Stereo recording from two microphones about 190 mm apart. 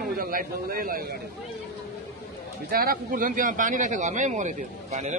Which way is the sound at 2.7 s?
50° right (ahead or behind).